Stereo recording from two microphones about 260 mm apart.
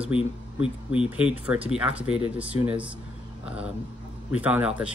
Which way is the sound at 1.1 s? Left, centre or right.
Centre.